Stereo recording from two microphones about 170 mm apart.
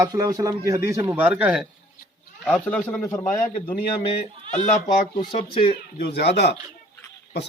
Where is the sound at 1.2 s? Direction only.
5° right (ahead or behind).